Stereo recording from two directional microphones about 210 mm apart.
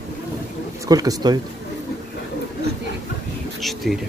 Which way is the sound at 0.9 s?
15° right (ahead or behind).